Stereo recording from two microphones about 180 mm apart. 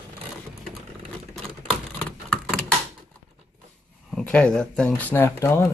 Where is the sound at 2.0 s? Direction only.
5° left (ahead or behind).